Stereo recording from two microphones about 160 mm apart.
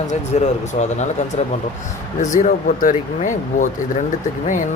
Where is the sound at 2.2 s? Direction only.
50° left (ahead or behind).